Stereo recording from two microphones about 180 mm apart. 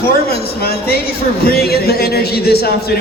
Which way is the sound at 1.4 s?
60° left (ahead or behind).